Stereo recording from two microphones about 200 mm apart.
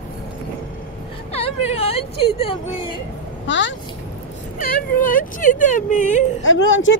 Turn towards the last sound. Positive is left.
turn(degrees=75)  # may be behind; listen again after turning